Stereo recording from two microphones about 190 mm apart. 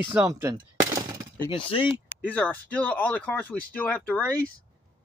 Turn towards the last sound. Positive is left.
turn(degrees=5)  # may be behind; listen again after turning